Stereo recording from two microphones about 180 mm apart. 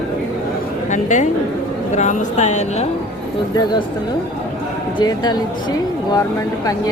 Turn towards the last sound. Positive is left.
turn(degrees=20)  # may be behind; listen again after turning